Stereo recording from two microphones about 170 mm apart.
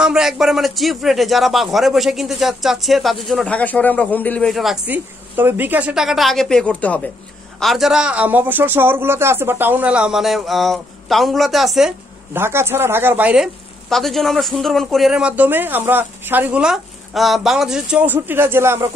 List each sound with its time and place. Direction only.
0.0 s a man's voice: 5° right (ahead or behind)
12.4 s speech: 15° right (ahead or behind)